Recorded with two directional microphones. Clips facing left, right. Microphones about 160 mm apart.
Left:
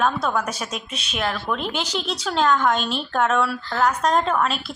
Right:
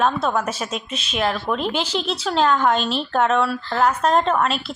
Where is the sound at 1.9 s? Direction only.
35° right (ahead or behind).